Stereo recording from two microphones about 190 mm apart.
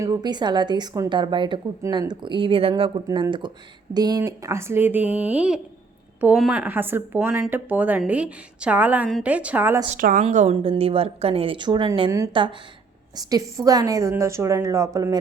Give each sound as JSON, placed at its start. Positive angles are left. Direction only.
{"t": 0.0, "sound": "speech", "side_deg": -20}
{"t": 10.0, "sound": "speech", "side_deg": -45}
{"t": 10.2, "sound": "speech", "side_deg": -35}